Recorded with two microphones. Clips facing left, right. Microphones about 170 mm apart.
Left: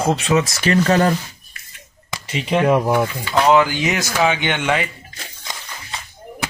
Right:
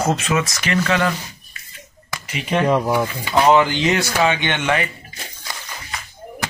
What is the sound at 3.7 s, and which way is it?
Speech, 10° left (ahead or behind).